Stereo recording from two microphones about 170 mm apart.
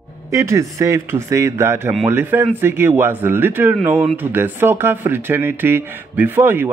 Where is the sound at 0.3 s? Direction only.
15° right (ahead or behind).